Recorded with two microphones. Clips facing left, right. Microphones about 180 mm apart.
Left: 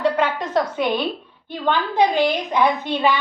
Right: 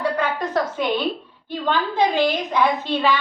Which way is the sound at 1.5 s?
15° left (ahead or behind).